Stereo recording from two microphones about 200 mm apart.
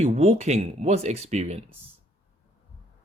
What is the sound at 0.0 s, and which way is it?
Speech, 35° right (ahead or behind).